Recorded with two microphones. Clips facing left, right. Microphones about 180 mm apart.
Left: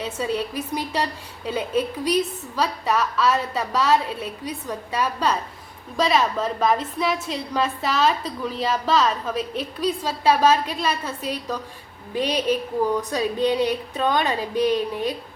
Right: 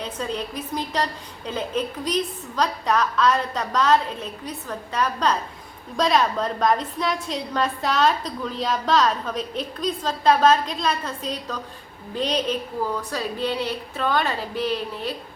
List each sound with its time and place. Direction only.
0.0 s a woman's voice: 10° left (ahead or behind)